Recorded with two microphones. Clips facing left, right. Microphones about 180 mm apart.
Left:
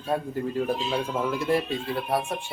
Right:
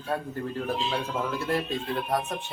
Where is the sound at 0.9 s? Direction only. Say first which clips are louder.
Left 3 dB; 10° left (ahead or behind).